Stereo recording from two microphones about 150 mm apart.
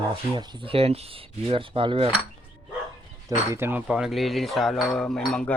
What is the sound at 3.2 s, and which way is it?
Speech, 15° right (ahead or behind).